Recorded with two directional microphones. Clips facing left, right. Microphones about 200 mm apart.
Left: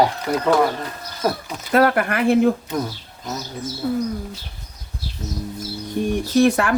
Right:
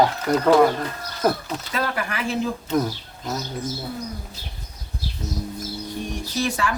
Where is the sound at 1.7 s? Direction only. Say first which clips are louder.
Left 11 dB; 60° left (ahead or behind).